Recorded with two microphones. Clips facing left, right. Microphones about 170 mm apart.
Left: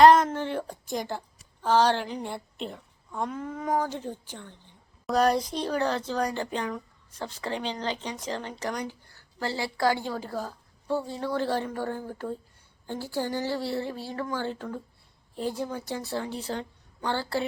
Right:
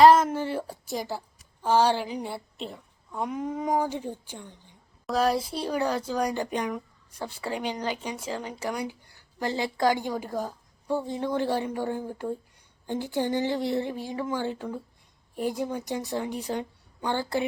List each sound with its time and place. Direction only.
0.0 s a woman's voice: 5° right (ahead or behind)
5.0 s speech: centre (ahead or behind); by 17.4 s 15° right (ahead or behind)